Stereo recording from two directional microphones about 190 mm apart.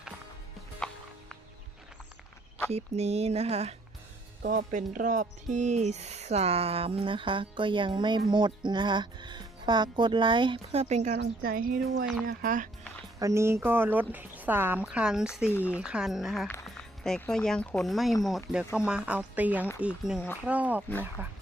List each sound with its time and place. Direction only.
2.7 s speech: 35° right (ahead or behind)
11.1 s speech: 55° right (ahead or behind)
13.1 s speech: 15° right (ahead or behind)
15.5 s speech: 10° left (ahead or behind)
15.8 s speech: 5° right (ahead or behind)